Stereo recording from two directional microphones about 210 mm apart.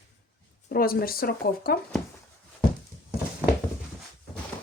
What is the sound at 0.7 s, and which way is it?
Speech, 45° left (ahead or behind).